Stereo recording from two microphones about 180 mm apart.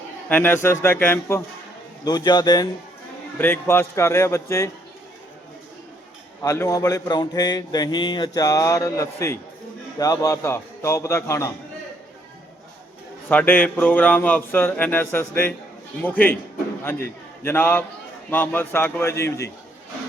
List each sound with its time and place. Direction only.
0.3 s speech: 10° left (ahead or behind)
2.0 s speech: 20° left (ahead or behind)
3.3 s speech: 10° left (ahead or behind)
6.4 s speech: 15° left (ahead or behind)
13.2 s speech: 10° left (ahead or behind)
17.4 s speech: 10° left (ahead or behind)